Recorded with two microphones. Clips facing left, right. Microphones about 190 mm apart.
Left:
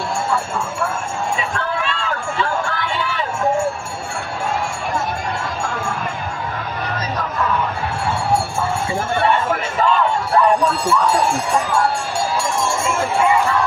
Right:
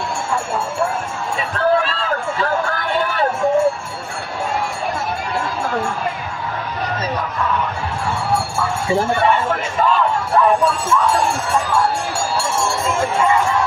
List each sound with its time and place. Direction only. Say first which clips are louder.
1.6 s run: right 6 dB; 35° right (ahead or behind)